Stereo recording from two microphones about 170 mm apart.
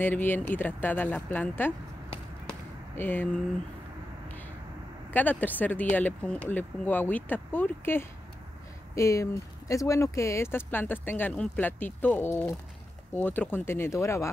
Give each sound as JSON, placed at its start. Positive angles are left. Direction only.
{"t": 0.0, "sound": "speech", "side_deg": 10}
{"t": 3.0, "sound": "speech", "side_deg": 10}
{"t": 5.1, "sound": "speech", "side_deg": 10}